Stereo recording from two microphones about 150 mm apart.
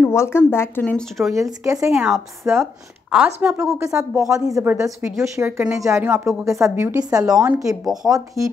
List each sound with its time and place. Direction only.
0.0 s speech: 15° left (ahead or behind); by 1.4 s centre (ahead or behind)
1.4 s speech: 20° right (ahead or behind)
1.9 s speech: centre (ahead or behind); by 7.2 s 25° right (ahead or behind)
7.2 s speech: 5° right (ahead or behind)